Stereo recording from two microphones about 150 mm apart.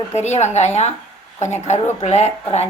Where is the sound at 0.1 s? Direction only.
50° left (ahead or behind).